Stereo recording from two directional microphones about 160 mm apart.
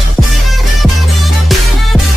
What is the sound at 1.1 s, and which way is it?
Music, centre (ahead or behind).